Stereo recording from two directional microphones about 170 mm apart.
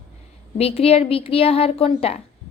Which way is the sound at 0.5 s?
35° left (ahead or behind).